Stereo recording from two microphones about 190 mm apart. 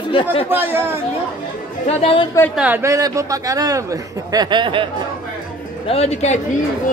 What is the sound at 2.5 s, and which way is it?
A man's voice, 10° right (ahead or behind).